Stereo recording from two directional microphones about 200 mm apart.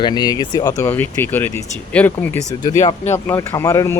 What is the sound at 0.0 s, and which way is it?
Speech, 20° left (ahead or behind).